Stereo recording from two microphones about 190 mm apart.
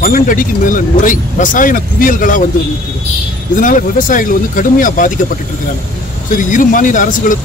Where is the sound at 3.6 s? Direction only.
45° left (ahead or behind).